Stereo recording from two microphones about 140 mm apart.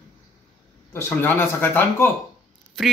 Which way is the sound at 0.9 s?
15° left (ahead or behind).